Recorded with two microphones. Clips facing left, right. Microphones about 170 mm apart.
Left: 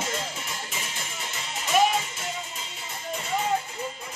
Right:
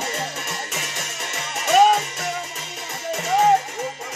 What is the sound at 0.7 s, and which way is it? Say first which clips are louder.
Music: right 5 dB; 75° right (ahead or behind).